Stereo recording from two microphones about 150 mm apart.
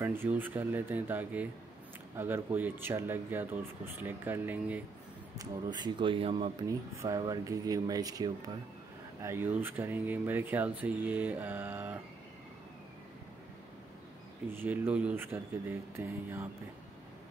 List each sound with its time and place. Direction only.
0.0 s speech: 15° right (ahead or behind)
5.4 s speech: 30° right (ahead or behind)
6.7 s speech: 20° right (ahead or behind)
14.5 s speech: 10° right (ahead or behind)